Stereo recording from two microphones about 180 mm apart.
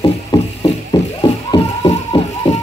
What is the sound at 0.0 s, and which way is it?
Music, 20° left (ahead or behind).